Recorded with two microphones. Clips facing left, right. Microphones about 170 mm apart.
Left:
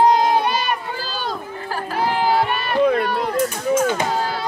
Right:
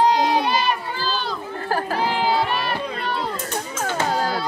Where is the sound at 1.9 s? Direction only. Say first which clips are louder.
Left 5 dB; 50° left (ahead or behind).